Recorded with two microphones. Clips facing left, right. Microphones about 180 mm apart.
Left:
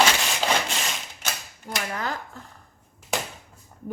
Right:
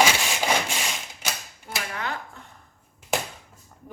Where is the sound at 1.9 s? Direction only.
35° left (ahead or behind).